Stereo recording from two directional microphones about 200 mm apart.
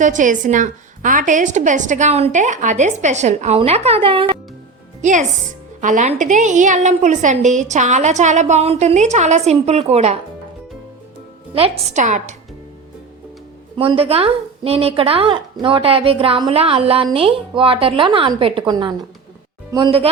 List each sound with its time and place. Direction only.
0.0 s a woman's voice: 40° right (ahead or behind)
5.8 s a woman's voice: 40° right (ahead or behind)
11.9 s a woman's voice: 35° right (ahead or behind)
13.7 s a woman's voice: 25° right (ahead or behind)